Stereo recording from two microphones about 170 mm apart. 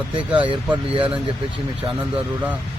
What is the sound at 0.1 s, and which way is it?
Speech, 30° right (ahead or behind).